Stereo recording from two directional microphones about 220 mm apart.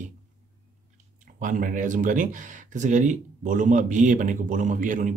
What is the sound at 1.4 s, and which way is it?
Speech, 35° right (ahead or behind).